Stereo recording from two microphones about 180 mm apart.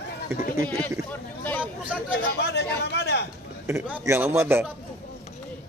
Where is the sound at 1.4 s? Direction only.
10° left (ahead or behind).